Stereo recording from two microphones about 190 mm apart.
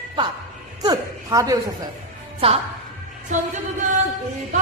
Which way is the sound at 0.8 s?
20° right (ahead or behind).